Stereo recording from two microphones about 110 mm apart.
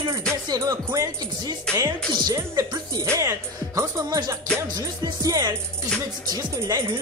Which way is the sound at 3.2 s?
25° right (ahead or behind).